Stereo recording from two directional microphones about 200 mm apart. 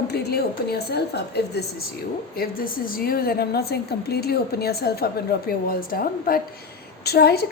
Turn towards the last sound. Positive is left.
turn(degrees=50)  # may be behind; listen again after turning